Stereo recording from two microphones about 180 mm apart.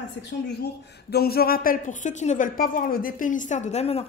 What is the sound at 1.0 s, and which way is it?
A woman's voice, 60° left (ahead or behind).